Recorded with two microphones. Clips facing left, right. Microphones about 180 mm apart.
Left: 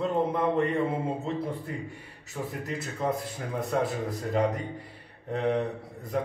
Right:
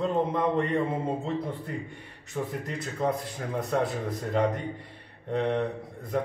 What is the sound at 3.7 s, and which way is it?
Speech, centre (ahead or behind).